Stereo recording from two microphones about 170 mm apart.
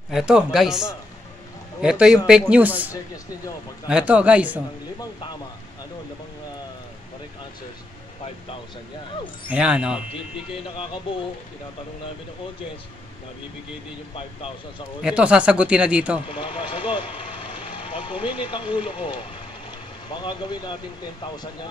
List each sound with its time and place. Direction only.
0.1 s speech: 5° right (ahead or behind)
3.9 s speech: 10° right (ahead or behind)
9.5 s speech: 5° right (ahead or behind)
10.6 s speech: 30° left (ahead or behind)
15.0 s speech: 5° right (ahead or behind)
16.3 s speech: 30° left (ahead or behind)
20.2 s speech: 25° left (ahead or behind)